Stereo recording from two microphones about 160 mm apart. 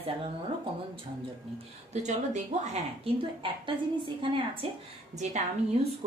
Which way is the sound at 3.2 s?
30° right (ahead or behind).